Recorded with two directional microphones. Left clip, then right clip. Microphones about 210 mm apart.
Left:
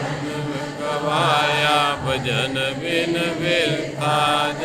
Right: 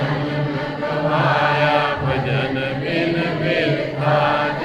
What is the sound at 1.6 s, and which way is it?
Mantra, 45° left (ahead or behind).